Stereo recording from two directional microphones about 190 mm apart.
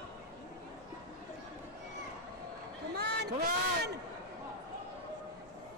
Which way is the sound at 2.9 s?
60° right (ahead or behind).